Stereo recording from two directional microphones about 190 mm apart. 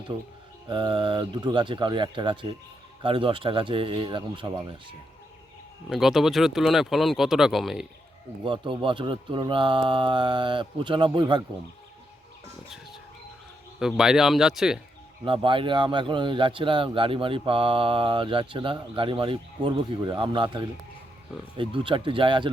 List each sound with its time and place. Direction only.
0.7 s a man's voice: 25° right (ahead or behind)
5.9 s speech: centre (ahead or behind)
8.4 s a man's voice: 25° right (ahead or behind)
13.7 s speech: 5° right (ahead or behind)
15.2 s a man's voice: 25° right (ahead or behind)